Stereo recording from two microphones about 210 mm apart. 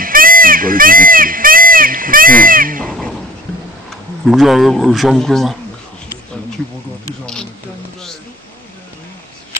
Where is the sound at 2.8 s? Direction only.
5° left (ahead or behind).